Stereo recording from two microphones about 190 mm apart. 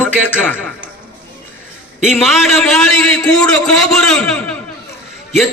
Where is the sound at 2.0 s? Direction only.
Centre (ahead or behind).